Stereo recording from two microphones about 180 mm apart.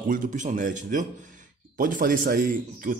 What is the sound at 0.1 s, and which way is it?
A man's voice, 45° right (ahead or behind).